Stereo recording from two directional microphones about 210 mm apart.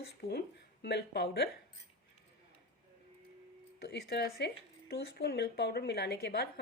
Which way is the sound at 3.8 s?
50° left (ahead or behind).